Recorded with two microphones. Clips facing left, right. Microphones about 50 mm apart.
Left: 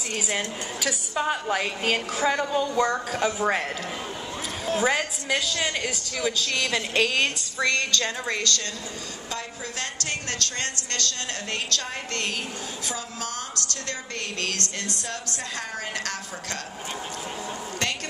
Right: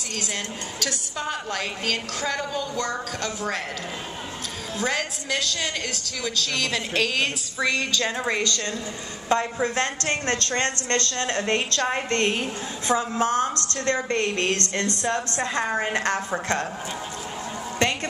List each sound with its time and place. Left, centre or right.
0.1 s a woman's voice: centre
4.7 s a woman's voice: centre
9.3 s a woman's voice: right